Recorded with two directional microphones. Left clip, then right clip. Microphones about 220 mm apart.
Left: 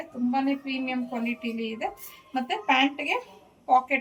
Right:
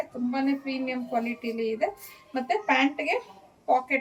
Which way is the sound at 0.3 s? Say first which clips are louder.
Left 3 dB; 15° right (ahead or behind).